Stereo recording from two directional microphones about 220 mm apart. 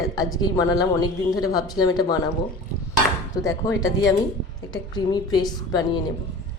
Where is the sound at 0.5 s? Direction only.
15° left (ahead or behind).